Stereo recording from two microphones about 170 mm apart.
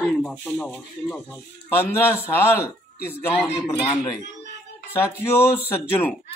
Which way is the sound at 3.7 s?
25° left (ahead or behind).